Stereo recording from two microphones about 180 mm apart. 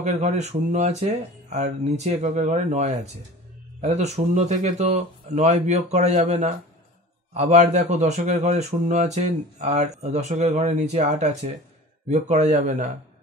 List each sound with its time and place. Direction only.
0.0 s a man's voice: 40° right (ahead or behind)